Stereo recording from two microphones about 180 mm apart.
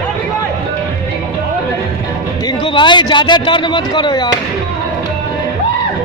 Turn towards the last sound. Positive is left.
turn(degrees=25)  # may be behind; listen again after turning